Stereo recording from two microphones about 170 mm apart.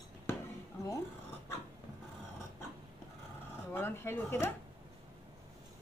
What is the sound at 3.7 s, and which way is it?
Speech, 15° left (ahead or behind).